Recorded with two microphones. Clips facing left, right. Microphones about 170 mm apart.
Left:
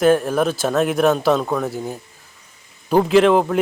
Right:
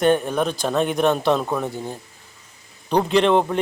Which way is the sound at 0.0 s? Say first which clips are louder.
Left 3 dB; centre (ahead or behind).